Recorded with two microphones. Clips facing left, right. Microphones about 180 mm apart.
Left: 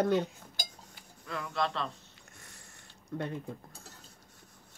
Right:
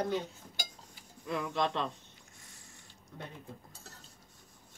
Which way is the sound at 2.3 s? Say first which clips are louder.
Left 4 dB; 65° left (ahead or behind).